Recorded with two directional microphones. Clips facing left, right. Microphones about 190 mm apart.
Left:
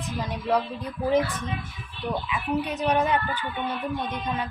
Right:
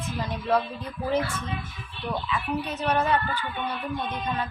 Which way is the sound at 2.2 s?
15° left (ahead or behind).